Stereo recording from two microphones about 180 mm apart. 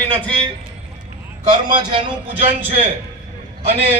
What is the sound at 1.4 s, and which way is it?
Speech, 25° right (ahead or behind).